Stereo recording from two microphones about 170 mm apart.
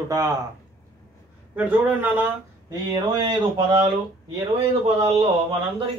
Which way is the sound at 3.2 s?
25° right (ahead or behind).